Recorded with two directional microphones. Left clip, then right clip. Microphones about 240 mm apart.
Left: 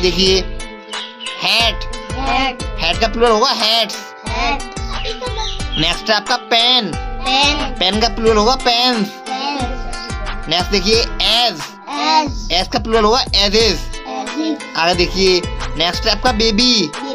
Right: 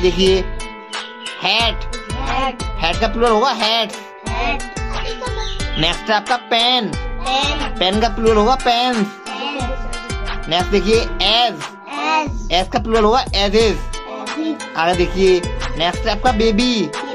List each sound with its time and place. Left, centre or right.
0.0 s speech: centre
2.8 s speech: centre
4.3 s music: left
5.8 s speech: centre
7.2 s speech: left
7.8 s speech: centre
10.5 s speech: centre
12.0 s music: left
12.4 s speech: centre
14.8 s speech: centre